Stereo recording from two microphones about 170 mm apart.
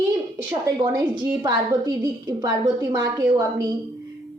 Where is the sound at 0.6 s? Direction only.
20° right (ahead or behind).